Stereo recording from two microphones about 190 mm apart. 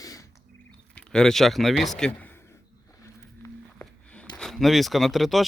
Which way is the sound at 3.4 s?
5° left (ahead or behind).